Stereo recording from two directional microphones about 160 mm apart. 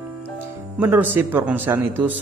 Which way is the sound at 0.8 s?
10° right (ahead or behind).